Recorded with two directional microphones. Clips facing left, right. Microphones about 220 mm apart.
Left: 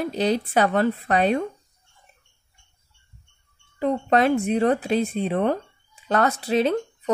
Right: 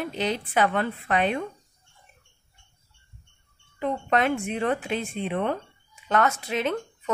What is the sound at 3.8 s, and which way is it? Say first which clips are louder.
Speech: left 4 dB; 35° left (ahead or behind).